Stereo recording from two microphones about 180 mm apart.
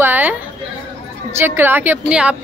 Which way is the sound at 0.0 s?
10° right (ahead or behind).